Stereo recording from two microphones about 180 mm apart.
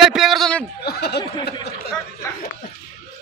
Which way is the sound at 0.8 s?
65° left (ahead or behind).